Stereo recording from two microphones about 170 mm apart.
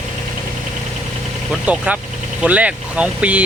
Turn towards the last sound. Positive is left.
turn(degrees=-10)  # may be behind; listen again after turning